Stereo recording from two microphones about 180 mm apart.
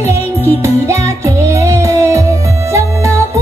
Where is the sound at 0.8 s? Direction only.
15° right (ahead or behind).